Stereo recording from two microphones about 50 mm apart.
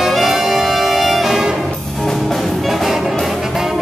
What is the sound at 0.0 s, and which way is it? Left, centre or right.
Music, centre.